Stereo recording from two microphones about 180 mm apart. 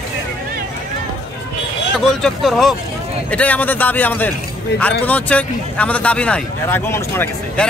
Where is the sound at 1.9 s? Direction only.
Centre (ahead or behind).